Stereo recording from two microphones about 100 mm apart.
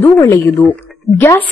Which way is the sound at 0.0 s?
25° left (ahead or behind).